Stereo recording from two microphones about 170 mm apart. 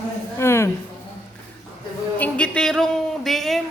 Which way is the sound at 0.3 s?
15° left (ahead or behind).